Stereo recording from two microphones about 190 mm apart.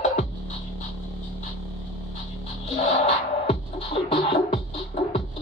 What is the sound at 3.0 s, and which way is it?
Music, 30° left (ahead or behind).